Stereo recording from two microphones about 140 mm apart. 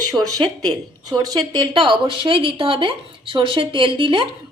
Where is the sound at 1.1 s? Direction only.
30° right (ahead or behind).